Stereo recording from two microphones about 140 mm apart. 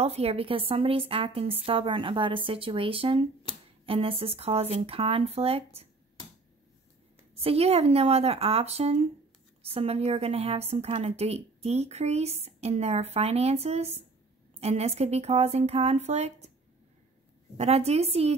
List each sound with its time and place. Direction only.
0.0 s a woman's voice: 45° right (ahead or behind)
7.3 s a woman's voice: 45° right (ahead or behind)
17.6 s a woman's voice: 50° right (ahead or behind)